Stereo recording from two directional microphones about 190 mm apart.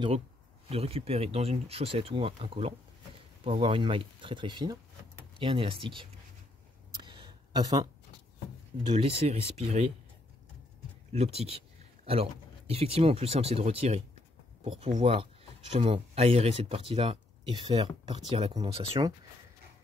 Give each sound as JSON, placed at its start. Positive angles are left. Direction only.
{"t": 0.7, "sound": "speech", "side_deg": -30}
{"t": 7.0, "sound": "a sound", "side_deg": -25}
{"t": 8.9, "sound": "speech", "side_deg": -30}
{"t": 11.1, "sound": "speech", "side_deg": -35}